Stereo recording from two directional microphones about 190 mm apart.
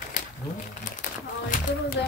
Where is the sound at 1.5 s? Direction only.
45° left (ahead or behind).